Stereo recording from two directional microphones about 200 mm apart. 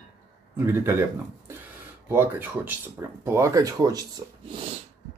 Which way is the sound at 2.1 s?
10° right (ahead or behind).